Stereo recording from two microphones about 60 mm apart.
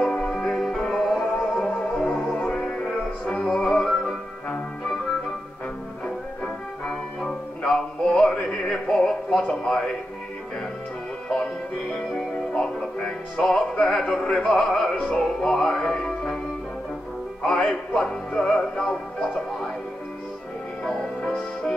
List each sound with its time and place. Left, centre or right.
0.0 s music: centre
1.2 s music: centre
3.4 s music: centre
6.0 s music: centre
9.5 s a man's voice: centre
12.1 s music: centre
15.0 s music: centre
17.4 s music: centre
20.8 s music: centre